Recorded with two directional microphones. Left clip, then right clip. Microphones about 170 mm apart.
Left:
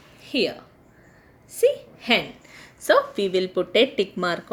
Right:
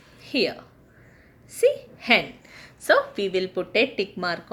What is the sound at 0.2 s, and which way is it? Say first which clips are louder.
A woman's voice: even; 30° left (ahead or behind).